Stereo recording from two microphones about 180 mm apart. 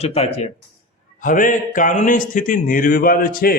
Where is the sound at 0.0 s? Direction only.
35° left (ahead or behind).